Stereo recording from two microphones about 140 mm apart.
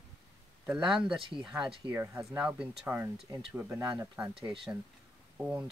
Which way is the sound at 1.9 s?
15° right (ahead or behind).